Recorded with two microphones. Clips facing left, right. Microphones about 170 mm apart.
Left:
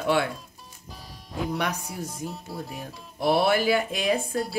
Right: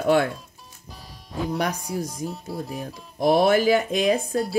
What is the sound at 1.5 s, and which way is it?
Speech, 35° right (ahead or behind).